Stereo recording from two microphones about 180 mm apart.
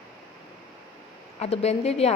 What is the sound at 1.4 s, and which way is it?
Speech, 35° left (ahead or behind).